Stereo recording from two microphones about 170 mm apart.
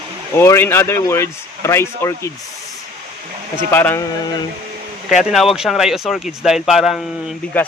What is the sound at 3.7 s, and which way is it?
Speech, 10° left (ahead or behind).